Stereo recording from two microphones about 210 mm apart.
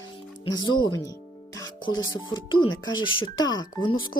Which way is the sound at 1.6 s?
70° left (ahead or behind).